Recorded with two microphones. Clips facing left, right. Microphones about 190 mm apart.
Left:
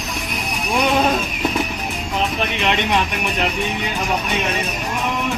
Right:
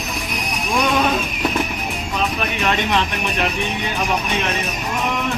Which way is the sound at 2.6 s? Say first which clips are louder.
Even; 20° left (ahead or behind).